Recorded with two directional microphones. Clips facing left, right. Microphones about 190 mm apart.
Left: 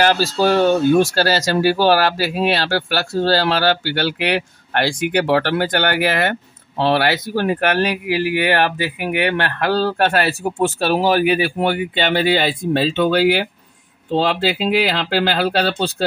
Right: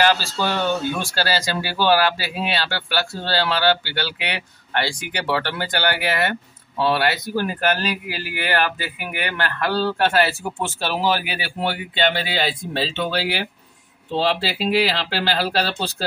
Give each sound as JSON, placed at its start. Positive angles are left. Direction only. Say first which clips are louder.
{"t": 0.0, "sound": "a man's voice", "louder": "left 4 dB", "side_deg": 45}
{"t": 9.4, "sound": "a man's voice", "louder": "left 4 dB", "side_deg": 60}